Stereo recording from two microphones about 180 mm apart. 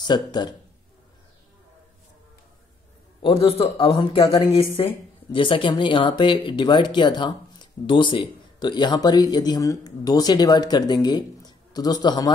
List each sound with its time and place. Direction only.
0.0 s speech: 25° left (ahead or behind)
3.2 s speech: 30° left (ahead or behind)